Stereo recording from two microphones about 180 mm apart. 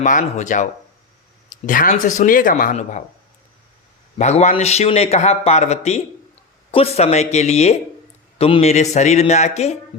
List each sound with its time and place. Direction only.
0.0 s speech: 45° left (ahead or behind)
4.2 s a man's voice: 40° left (ahead or behind)